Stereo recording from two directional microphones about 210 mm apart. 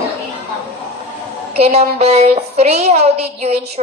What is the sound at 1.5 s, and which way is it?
A woman's voice, 30° right (ahead or behind).